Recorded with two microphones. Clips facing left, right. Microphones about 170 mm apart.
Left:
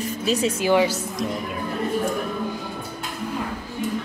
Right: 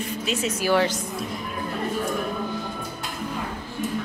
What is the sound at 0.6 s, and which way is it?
Speech, 20° left (ahead or behind).